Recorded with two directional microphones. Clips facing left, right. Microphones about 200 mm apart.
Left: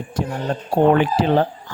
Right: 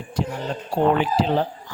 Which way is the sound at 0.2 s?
50° left (ahead or behind).